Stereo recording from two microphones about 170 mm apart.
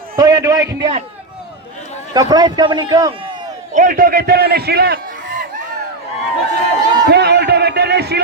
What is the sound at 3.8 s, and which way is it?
A man's voice, 55° right (ahead or behind).